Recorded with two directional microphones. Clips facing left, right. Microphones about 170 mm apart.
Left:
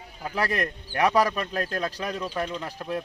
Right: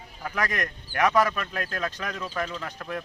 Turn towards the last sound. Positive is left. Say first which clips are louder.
# left 3 dB
turn(degrees=25)  # may be behind; listen again after turning